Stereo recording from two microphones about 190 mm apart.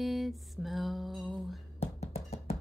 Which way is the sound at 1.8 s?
35° left (ahead or behind).